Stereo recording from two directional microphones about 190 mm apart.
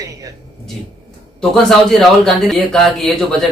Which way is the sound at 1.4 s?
Centre (ahead or behind).